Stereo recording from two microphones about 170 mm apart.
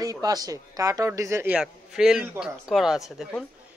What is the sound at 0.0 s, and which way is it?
A man's voice, 20° right (ahead or behind).